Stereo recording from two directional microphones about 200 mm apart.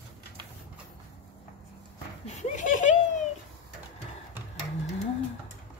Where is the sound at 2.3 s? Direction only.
35° left (ahead or behind).